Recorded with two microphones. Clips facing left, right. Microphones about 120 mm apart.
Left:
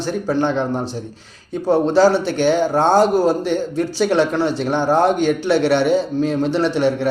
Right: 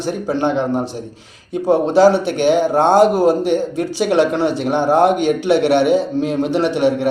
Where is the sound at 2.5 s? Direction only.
20° right (ahead or behind).